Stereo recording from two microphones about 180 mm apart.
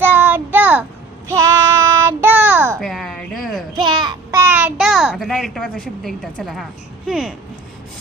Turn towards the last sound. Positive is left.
turn(degrees=0)  # may be behind; listen again after turning